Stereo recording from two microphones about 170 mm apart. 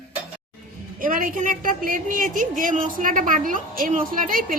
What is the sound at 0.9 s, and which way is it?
A woman's voice, 55° right (ahead or behind).